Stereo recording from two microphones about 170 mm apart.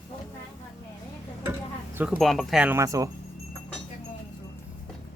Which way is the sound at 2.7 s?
20° right (ahead or behind).